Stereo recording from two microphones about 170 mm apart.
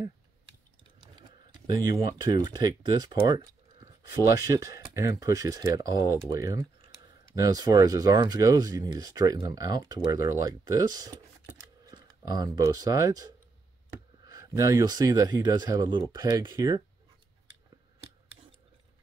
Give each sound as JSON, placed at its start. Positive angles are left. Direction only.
{"t": 1.0, "sound": "speech", "side_deg": -25}